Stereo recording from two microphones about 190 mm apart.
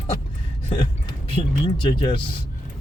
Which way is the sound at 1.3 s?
30° left (ahead or behind).